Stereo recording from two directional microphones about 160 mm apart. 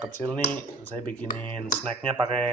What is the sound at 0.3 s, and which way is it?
Speech, 10° left (ahead or behind).